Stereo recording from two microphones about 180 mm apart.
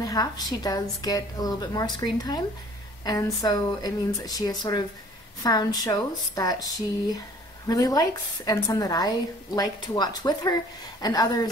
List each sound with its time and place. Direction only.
0.0 s a woman's voice: 20° left (ahead or behind)